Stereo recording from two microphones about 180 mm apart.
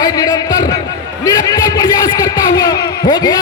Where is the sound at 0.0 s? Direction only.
20° left (ahead or behind).